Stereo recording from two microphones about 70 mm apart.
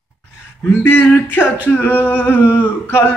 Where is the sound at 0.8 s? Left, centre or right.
Left.